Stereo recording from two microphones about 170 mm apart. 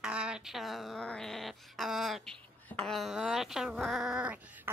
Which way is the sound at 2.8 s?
Centre (ahead or behind).